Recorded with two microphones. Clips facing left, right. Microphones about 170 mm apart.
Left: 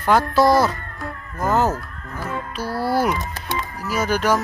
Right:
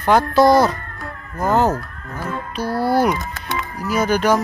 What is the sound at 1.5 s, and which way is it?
Speech, 30° right (ahead or behind).